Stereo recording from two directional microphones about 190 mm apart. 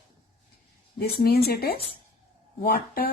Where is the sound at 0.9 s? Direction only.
55° left (ahead or behind).